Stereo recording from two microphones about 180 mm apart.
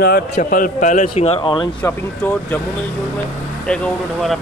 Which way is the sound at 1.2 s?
30° left (ahead or behind).